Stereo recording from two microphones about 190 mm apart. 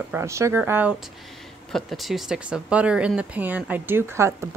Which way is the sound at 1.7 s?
Centre (ahead or behind).